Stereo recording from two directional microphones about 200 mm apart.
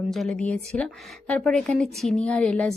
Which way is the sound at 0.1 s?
Centre (ahead or behind).